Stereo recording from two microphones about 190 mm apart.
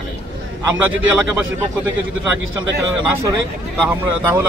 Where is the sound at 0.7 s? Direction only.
10° right (ahead or behind).